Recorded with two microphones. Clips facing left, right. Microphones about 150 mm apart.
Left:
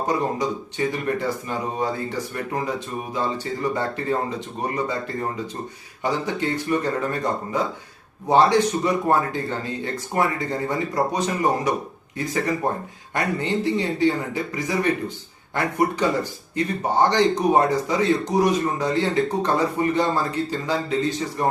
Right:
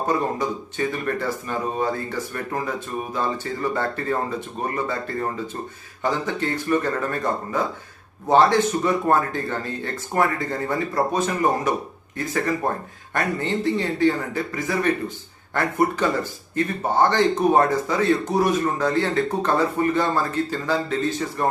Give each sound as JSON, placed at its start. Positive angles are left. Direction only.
{"t": 0.1, "sound": "speech", "side_deg": 15}